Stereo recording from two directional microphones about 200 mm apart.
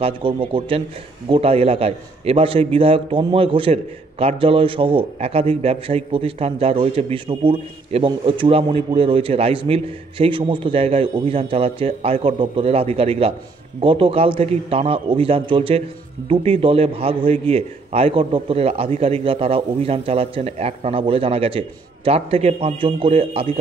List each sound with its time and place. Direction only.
0.0 s a man's voice: 25° right (ahead or behind)